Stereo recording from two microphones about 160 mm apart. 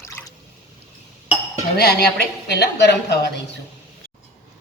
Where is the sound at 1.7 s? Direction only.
90° left.